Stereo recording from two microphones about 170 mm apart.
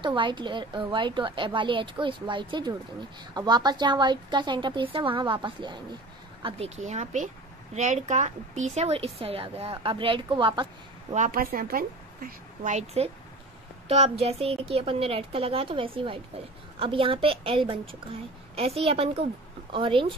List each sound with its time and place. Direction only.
0.0 s speech: 30° right (ahead or behind)
6.4 s a woman's voice: 40° right (ahead or behind)
11.1 s a woman's voice: 55° right (ahead or behind); by 20.2 s 30° right (ahead or behind)